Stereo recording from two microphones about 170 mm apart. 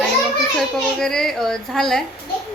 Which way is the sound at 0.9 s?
5° left (ahead or behind).